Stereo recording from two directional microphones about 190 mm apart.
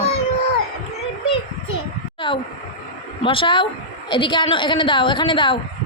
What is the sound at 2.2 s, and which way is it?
A woman's voice, 25° left (ahead or behind).